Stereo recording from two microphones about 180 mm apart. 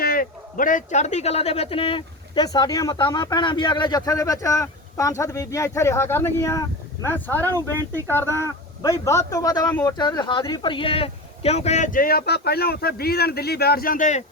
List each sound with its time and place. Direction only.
0.0 s a man's voice: 55° left (ahead or behind)